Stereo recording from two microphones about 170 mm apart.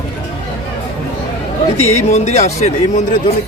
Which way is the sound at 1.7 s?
40° left (ahead or behind).